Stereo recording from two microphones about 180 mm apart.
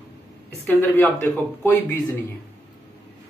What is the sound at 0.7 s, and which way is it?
Speech, 10° left (ahead or behind).